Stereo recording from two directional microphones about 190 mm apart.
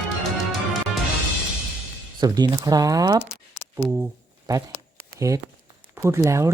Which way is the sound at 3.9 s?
15° right (ahead or behind).